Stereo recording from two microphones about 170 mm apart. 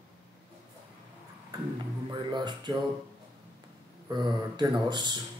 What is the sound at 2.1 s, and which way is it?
Speech, 25° right (ahead or behind).